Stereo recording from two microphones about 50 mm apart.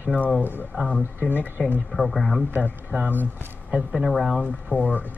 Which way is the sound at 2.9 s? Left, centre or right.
Left.